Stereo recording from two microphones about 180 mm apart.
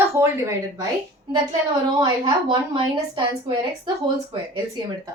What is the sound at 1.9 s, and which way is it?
A woman's voice, 25° right (ahead or behind).